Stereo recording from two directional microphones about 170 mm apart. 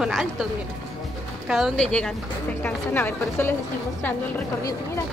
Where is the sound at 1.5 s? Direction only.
Centre (ahead or behind).